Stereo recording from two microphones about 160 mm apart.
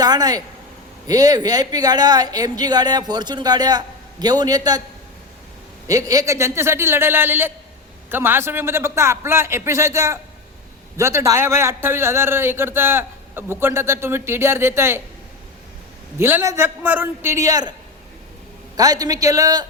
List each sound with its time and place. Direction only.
0.0 s speech: 25° right (ahead or behind)
5.9 s a man's voice: 20° right (ahead or behind)
16.1 s a man's voice: 15° right (ahead or behind)
18.8 s speech: 25° right (ahead or behind)